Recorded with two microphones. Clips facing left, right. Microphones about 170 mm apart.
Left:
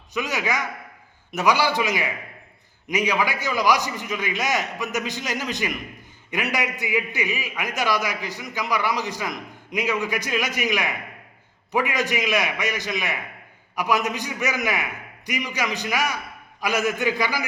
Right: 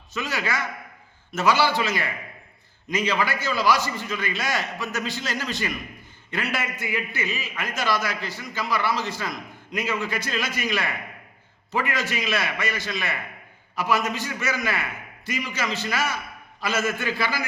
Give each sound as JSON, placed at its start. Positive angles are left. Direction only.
{"t": 0.1, "sound": "a man's voice", "side_deg": 15}